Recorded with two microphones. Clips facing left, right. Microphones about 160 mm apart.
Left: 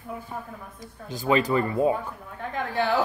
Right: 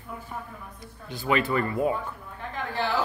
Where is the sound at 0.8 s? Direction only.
40° left (ahead or behind).